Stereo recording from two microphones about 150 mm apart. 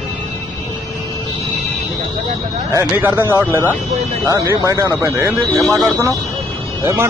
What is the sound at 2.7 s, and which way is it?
Speech, 15° right (ahead or behind).